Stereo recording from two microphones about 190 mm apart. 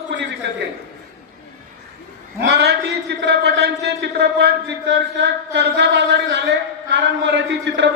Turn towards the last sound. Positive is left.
turn(degrees=-65)  # may be behind; listen again after turning